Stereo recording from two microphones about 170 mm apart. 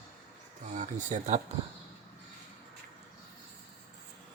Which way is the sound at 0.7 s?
45° right (ahead or behind).